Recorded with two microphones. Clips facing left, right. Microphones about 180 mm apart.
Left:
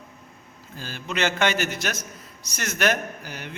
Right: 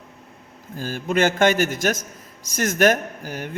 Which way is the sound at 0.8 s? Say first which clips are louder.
Right 7 dB; 50° right (ahead or behind).